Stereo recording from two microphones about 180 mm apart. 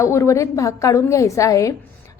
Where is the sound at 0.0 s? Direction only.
15° left (ahead or behind).